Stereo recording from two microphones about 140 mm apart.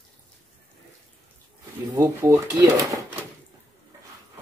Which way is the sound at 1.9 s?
20° right (ahead or behind).